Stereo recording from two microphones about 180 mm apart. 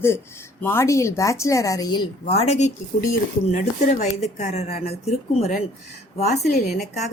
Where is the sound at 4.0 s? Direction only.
40° left (ahead or behind).